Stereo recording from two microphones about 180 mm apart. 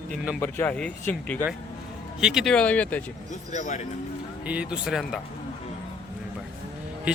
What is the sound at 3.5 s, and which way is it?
Speech, 40° left (ahead or behind).